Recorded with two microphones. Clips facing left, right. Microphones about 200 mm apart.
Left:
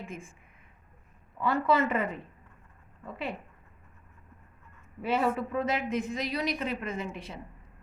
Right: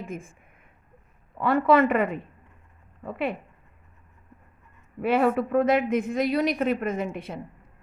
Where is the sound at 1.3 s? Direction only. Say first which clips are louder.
Right 6 dB; 60° right (ahead or behind).